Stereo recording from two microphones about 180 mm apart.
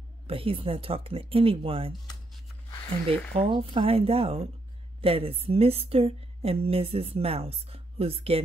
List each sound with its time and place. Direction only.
0.3 s a woman's voice: 30° right (ahead or behind)
3.3 s a woman's voice: 30° right (ahead or behind)